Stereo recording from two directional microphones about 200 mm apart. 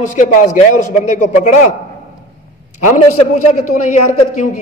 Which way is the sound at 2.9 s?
35° left (ahead or behind).